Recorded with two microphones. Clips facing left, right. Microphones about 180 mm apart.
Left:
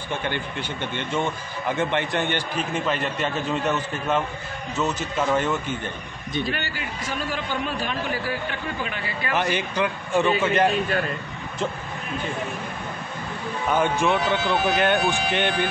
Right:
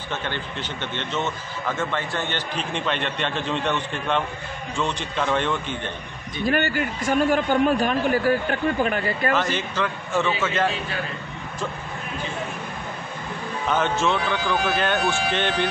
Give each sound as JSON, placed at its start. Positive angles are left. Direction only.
{"t": 0.1, "sound": "a man's voice", "side_deg": 10}
{"t": 6.5, "sound": "a man's voice", "side_deg": -50}
{"t": 9.3, "sound": "a man's voice", "side_deg": 15}
{"t": 13.7, "sound": "a man's voice", "side_deg": 10}